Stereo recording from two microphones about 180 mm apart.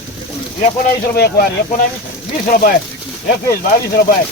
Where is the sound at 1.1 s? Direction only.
60° left (ahead or behind).